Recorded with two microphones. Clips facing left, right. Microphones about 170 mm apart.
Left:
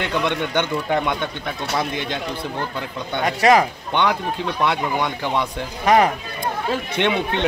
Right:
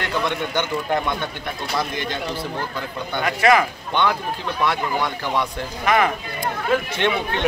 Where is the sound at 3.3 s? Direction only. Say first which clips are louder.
Left 2 dB; 35° left (ahead or behind).